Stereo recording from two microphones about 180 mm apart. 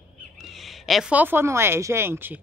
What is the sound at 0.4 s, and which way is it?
Speech, centre (ahead or behind).